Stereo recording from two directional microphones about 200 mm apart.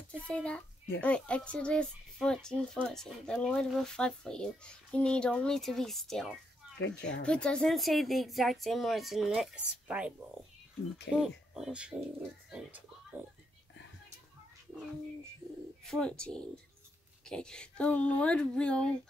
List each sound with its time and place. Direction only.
0.1 s speech: 5° left (ahead or behind)
6.8 s speech: 60° left (ahead or behind)
7.2 s speech: 5° left (ahead or behind)
15.8 s speech: 5° left (ahead or behind)